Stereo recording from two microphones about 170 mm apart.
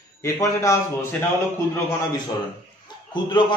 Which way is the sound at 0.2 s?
20° left (ahead or behind).